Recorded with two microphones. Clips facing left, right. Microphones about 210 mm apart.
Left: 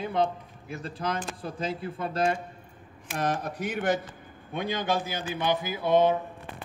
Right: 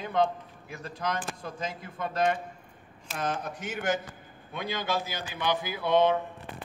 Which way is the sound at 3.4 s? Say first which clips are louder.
Left 5 dB; 35° left (ahead or behind).